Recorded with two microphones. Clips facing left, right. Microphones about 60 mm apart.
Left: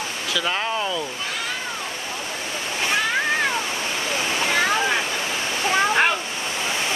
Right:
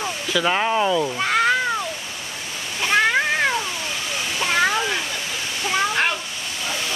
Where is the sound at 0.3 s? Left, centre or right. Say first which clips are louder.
Right 4 dB; centre.